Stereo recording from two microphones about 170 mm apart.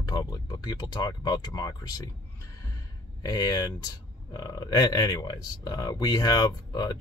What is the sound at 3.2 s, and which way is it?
Speech, 25° left (ahead or behind).